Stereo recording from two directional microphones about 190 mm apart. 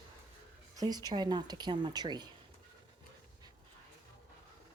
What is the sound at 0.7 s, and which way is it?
Speech, 20° right (ahead or behind).